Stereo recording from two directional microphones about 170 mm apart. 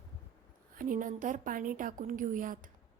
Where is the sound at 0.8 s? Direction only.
50° right (ahead or behind).